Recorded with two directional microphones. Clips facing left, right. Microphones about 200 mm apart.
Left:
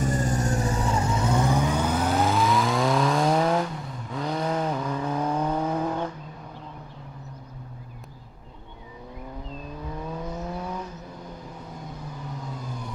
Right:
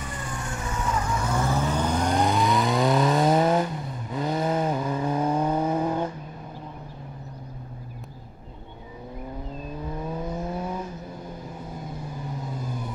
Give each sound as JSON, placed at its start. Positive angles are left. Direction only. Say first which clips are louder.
{"t": 0.0, "sound": "vehicle", "louder": "left 9 dB", "side_deg": 40}
{"t": 10.0, "sound": "vehicle", "louder": "right 2 dB", "side_deg": -20}